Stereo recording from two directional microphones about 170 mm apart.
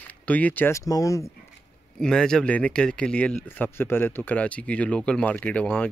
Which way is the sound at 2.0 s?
5° left (ahead or behind).